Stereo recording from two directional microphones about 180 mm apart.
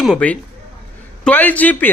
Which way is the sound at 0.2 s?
5° left (ahead or behind).